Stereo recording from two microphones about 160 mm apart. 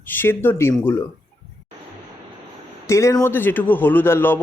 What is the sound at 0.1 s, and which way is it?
Speech, 15° left (ahead or behind).